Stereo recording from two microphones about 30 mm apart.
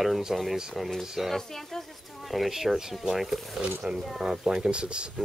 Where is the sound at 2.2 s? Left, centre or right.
Centre.